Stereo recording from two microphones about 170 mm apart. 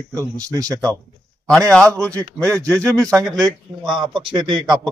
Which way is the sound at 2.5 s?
5° left (ahead or behind).